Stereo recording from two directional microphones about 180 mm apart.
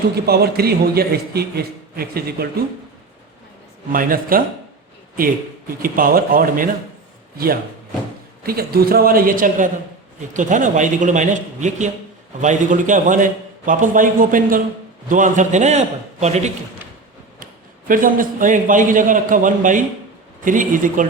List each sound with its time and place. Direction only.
0.3 s a man's voice: 60° right (ahead or behind)
3.9 s a man's voice: 50° right (ahead or behind)
5.8 s a man's voice: 55° right (ahead or behind)
17.4 s a man's voice: 50° right (ahead or behind)